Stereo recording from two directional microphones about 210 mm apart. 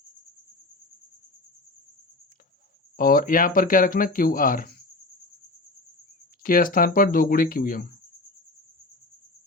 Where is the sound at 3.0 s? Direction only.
45° left (ahead or behind).